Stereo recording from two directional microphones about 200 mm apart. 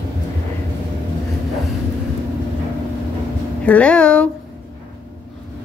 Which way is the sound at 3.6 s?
5° left (ahead or behind).